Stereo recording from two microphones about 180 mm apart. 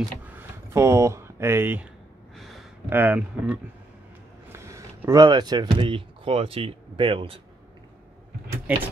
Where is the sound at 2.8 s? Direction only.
10° right (ahead or behind); by 7.4 s 30° right (ahead or behind).